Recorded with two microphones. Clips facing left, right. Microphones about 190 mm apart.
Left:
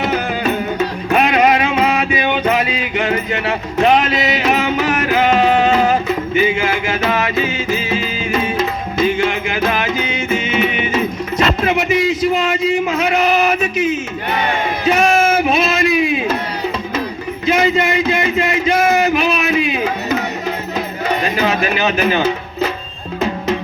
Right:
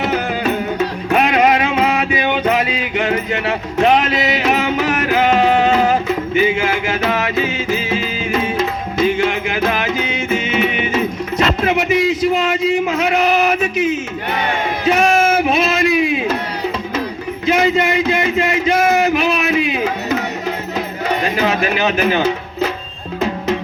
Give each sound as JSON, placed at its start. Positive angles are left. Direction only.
{"t": 1.1, "sound": "music", "side_deg": -50}
{"t": 17.4, "sound": "a sound", "side_deg": -60}
{"t": 21.4, "sound": "music", "side_deg": -60}